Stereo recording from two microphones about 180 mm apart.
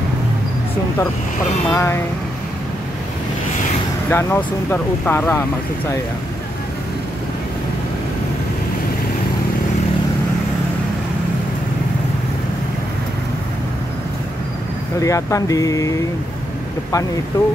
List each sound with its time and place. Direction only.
1.7 s speech: 15° left (ahead or behind)
4.1 s speech: 10° left (ahead or behind)
15.0 s speech: 15° left (ahead or behind)
17.3 s speech: 15° left (ahead or behind)